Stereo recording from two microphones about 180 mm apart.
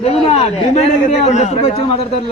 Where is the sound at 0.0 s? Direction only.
35° left (ahead or behind).